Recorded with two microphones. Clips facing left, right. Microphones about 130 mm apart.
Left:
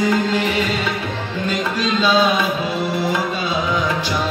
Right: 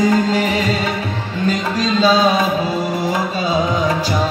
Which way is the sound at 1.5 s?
35° right (ahead or behind).